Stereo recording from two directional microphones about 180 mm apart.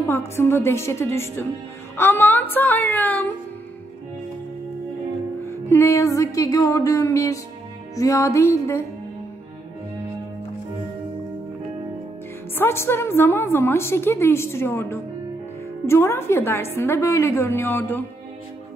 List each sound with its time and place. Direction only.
0.1 s a woman's voice: 15° left (ahead or behind)
5.4 s a woman's voice: 15° left (ahead or behind)
12.5 s a woman's voice: 15° left (ahead or behind)